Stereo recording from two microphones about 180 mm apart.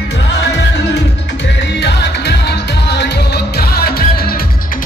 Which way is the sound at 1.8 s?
70° left (ahead or behind).